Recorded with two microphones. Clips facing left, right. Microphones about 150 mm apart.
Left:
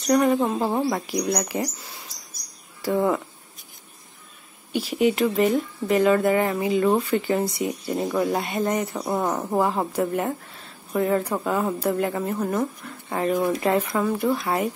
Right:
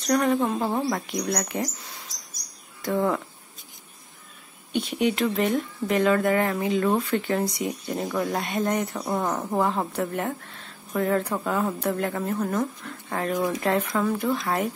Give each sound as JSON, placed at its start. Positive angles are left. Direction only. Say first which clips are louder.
{"t": 0.0, "sound": "speech", "louder": "left 3 dB", "side_deg": 5}
{"t": 2.8, "sound": "speech", "louder": "left 2 dB", "side_deg": 5}
{"t": 4.7, "sound": "speech", "louder": "left 3 dB", "side_deg": 5}
{"t": 13.3, "sound": "speech", "louder": "left 3 dB", "side_deg": 20}
{"t": 13.6, "sound": "speech", "louder": "left 2 dB", "side_deg": 5}